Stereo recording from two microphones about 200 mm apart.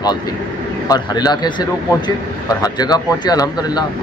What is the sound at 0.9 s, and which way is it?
Speech, 20° left (ahead or behind).